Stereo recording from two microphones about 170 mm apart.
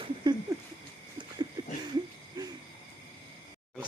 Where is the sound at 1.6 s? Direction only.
25° right (ahead or behind).